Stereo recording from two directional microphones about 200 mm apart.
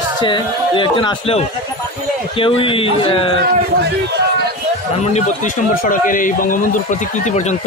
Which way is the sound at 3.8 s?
55° right (ahead or behind).